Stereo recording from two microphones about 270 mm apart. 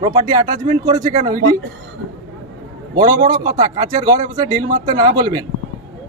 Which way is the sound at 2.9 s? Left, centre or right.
Centre.